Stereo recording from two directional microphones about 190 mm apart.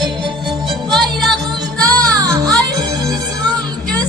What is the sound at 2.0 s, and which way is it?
Music, 20° right (ahead or behind).